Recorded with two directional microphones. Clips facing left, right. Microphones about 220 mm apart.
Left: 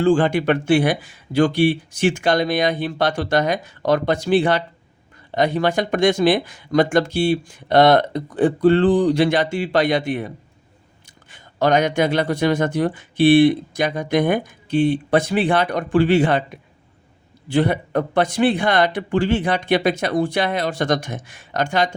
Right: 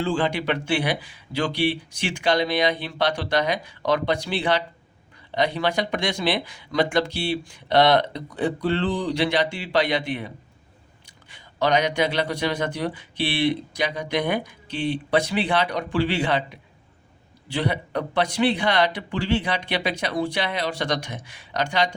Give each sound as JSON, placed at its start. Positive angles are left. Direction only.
{"t": 0.0, "sound": "speech", "side_deg": 50}